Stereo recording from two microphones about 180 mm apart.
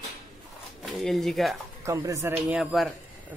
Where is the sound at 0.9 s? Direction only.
Centre (ahead or behind).